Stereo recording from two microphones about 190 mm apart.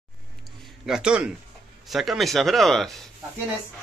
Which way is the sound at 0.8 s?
5° right (ahead or behind).